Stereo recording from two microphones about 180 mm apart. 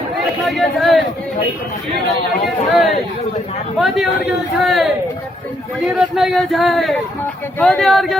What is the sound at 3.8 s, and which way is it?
Speech, centre (ahead or behind).